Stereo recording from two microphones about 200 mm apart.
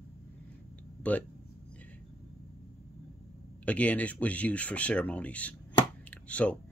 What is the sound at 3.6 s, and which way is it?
Speech, 5° left (ahead or behind).